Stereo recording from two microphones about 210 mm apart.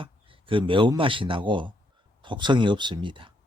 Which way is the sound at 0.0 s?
25° right (ahead or behind).